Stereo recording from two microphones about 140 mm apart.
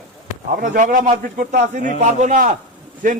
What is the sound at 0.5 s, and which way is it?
A man's voice, 70° right (ahead or behind).